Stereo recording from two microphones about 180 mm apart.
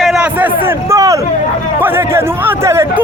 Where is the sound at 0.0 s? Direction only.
5° right (ahead or behind).